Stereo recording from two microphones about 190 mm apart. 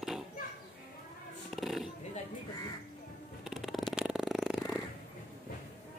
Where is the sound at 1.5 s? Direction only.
Centre (ahead or behind).